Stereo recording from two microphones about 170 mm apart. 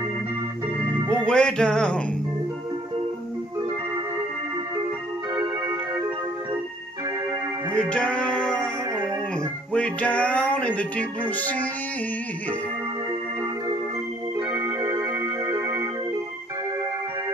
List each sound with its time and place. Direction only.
1.0 s speech: 5° left (ahead or behind)
5.3 s music: 25° right (ahead or behind)
7.7 s music: 5° left (ahead or behind)
9.7 s music: 5° left (ahead or behind)
14.5 s music: 15° right (ahead or behind)